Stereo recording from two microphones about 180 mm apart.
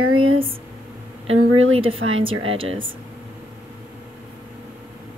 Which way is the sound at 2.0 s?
90° right.